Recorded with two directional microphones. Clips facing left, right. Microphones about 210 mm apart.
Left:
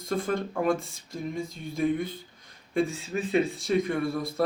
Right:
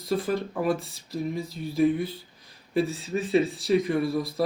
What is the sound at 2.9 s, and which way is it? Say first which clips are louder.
Speech: right 3 dB; 35° right (ahead or behind).